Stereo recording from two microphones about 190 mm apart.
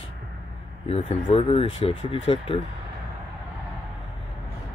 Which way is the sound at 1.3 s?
30° left (ahead or behind).